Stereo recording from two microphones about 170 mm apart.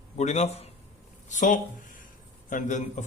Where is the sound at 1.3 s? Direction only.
50° left (ahead or behind).